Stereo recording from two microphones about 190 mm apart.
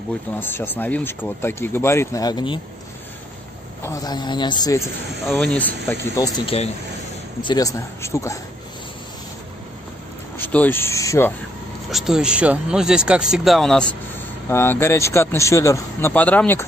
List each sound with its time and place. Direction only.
0.4 s speech: 10° left (ahead or behind)
3.8 s a man's voice: 20° left (ahead or behind)
5.3 s speech: 5° left (ahead or behind)
10.3 s speech: 10° left (ahead or behind)
11.9 s speech: centre (ahead or behind)